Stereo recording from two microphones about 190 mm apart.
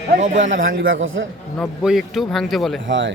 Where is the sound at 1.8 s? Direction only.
Centre (ahead or behind).